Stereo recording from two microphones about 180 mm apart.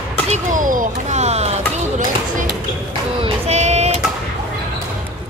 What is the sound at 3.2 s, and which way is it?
Child singing, 40° right (ahead or behind).